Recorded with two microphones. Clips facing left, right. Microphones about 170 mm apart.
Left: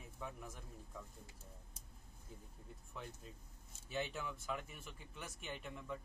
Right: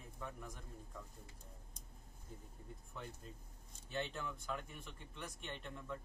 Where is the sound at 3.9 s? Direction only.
5° left (ahead or behind).